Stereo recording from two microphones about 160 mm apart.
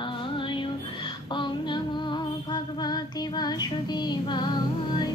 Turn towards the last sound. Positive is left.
turn(degrees=30)  # may be behind; listen again after turning